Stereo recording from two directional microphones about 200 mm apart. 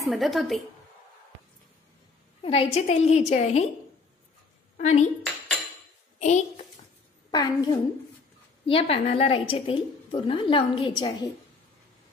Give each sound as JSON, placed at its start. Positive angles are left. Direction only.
{"t": 0.0, "sound": "a woman's voice", "side_deg": 0}
{"t": 2.4, "sound": "a woman's voice", "side_deg": 30}
{"t": 4.7, "sound": "a woman's voice", "side_deg": 35}
{"t": 6.1, "sound": "a child's voice", "side_deg": 35}
{"t": 7.2, "sound": "a woman's voice", "side_deg": 20}